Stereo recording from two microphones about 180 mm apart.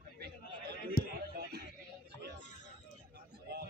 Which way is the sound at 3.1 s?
60° right (ahead or behind).